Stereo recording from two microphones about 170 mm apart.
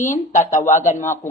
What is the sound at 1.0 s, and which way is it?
Speech, 15° left (ahead or behind).